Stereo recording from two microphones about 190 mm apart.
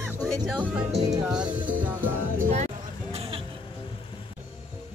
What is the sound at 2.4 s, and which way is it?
Music, 35° right (ahead or behind).